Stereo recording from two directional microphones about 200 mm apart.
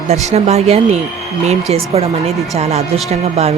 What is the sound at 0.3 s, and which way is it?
Speech, 30° right (ahead or behind).